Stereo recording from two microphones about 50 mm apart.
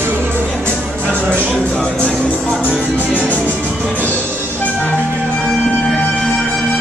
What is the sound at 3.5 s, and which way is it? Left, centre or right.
Music, right.